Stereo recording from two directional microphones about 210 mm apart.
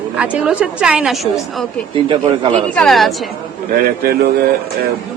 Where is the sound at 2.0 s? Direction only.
25° right (ahead or behind).